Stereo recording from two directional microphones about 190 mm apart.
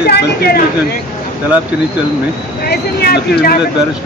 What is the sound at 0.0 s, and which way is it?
Speech, 55° left (ahead or behind).